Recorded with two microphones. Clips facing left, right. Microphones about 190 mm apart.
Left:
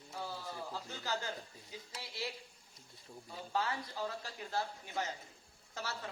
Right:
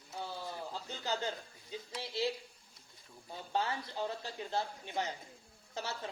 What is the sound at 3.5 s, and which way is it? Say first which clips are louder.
Speech: right 2 dB; 20° right (ahead or behind).